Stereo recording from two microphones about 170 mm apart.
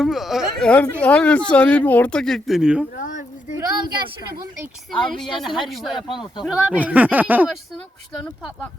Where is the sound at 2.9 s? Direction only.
50° left (ahead or behind).